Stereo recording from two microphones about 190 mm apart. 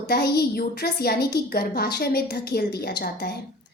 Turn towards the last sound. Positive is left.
turn(degrees=55)  # may be behind; listen again after turning